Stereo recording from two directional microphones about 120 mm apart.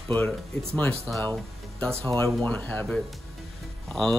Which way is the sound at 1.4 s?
5° left (ahead or behind).